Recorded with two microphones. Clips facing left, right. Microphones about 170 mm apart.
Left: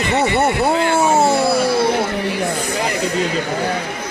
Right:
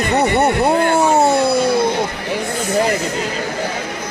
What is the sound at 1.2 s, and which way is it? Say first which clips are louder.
Music: right 1 dB; centre (ahead or behind).